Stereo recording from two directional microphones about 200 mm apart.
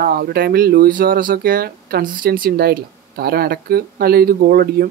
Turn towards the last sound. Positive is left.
turn(degrees=-50)  # may be behind; listen again after turning